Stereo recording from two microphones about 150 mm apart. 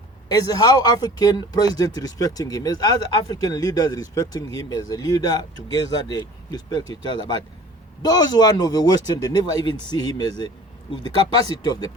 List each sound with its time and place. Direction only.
0.3 s speech: 25° left (ahead or behind)
11.6 s speech: 30° left (ahead or behind)